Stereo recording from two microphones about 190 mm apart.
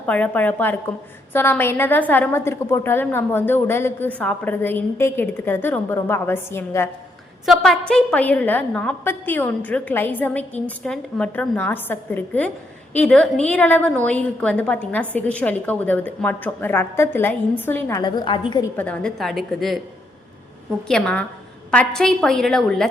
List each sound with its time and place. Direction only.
0.0 s a woman's voice: 10° left (ahead or behind)
7.4 s a woman's voice: centre (ahead or behind); by 18.6 s 25° left (ahead or behind)
18.8 s a woman's voice: 5° left (ahead or behind)
20.8 s a woman's voice: 5° left (ahead or behind)